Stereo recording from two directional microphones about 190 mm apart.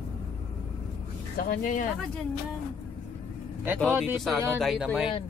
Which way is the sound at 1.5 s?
45° left (ahead or behind).